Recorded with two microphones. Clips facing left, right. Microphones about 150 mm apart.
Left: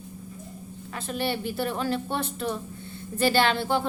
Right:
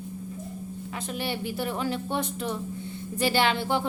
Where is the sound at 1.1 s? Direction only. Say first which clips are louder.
Left 3 dB; 15° right (ahead or behind).